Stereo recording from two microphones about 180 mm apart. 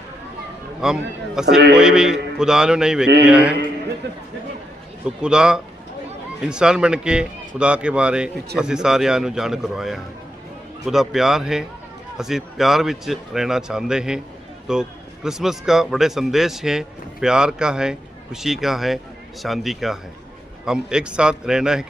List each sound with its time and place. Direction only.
0.8 s a man's voice: 5° right (ahead or behind)
4.0 s speech: 70° right (ahead or behind)
5.2 s a man's voice: 5° right (ahead or behind)